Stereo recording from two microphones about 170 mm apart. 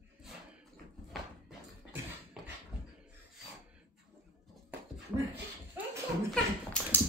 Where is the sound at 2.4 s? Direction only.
Centre (ahead or behind).